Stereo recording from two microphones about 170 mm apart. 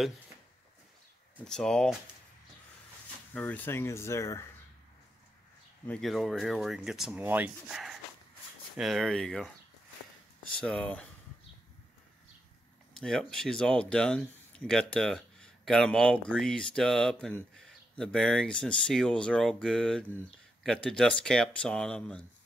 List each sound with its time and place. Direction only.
1.4 s speech: 5° left (ahead or behind)
3.3 s speech: 10° left (ahead or behind)
5.9 s speech: centre (ahead or behind)
10.5 s speech: 5° left (ahead or behind)
12.9 s speech: centre (ahead or behind)